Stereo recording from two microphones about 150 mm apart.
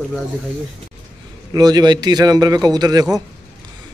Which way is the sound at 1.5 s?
25° right (ahead or behind).